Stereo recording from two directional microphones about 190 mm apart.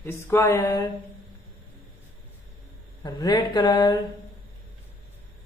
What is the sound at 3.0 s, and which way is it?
Speech, 20° left (ahead or behind).